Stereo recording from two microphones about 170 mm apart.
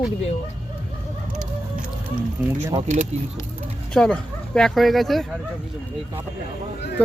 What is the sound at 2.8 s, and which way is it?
Speech, 40° right (ahead or behind).